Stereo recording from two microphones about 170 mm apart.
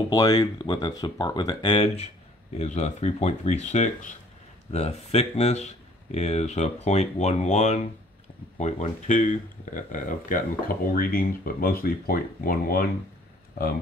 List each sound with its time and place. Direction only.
0.1 s speech: 20° left (ahead or behind)
2.5 s speech: 40° left (ahead or behind); by 12.8 s 60° left (ahead or behind)